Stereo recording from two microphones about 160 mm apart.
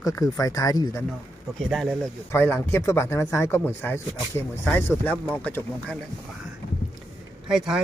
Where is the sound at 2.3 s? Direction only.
15° left (ahead or behind).